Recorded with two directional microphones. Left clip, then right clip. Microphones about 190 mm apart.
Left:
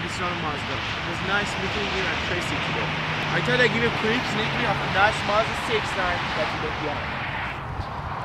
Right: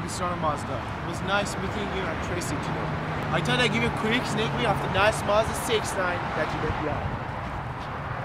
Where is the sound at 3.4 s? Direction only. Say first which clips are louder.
Left 4 dB; 25° right (ahead or behind).